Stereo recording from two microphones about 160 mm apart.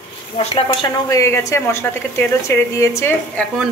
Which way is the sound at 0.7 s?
30° left (ahead or behind).